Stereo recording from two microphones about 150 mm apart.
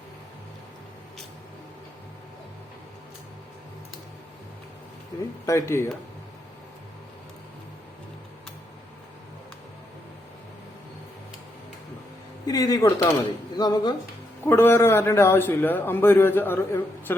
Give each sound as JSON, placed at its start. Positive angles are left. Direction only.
{"t": 5.5, "sound": "a man's voice", "side_deg": 20}
{"t": 12.5, "sound": "speech", "side_deg": 25}
{"t": 14.4, "sound": "a man's voice", "side_deg": 15}